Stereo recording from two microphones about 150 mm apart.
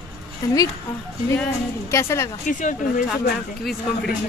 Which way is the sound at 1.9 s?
20° left (ahead or behind).